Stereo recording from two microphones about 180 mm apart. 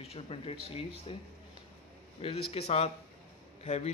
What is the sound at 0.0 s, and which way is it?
Speech, 35° left (ahead or behind).